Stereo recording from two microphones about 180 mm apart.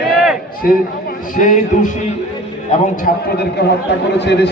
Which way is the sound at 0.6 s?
55° left (ahead or behind).